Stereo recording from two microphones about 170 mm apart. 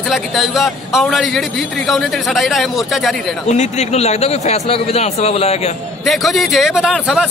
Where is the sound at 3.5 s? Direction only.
40° left (ahead or behind).